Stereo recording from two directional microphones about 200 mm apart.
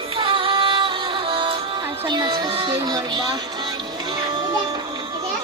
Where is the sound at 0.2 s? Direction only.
25° right (ahead or behind).